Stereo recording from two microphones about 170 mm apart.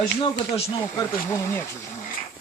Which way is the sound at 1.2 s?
15° left (ahead or behind).